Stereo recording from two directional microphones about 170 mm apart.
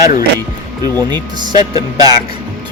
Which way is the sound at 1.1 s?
25° right (ahead or behind).